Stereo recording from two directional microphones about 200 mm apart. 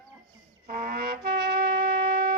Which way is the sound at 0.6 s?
50° right (ahead or behind).